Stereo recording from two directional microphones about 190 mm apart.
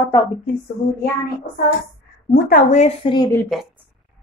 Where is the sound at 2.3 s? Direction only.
45° left (ahead or behind).